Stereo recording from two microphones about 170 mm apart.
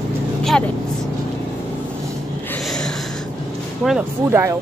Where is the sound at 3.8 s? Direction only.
5° right (ahead or behind).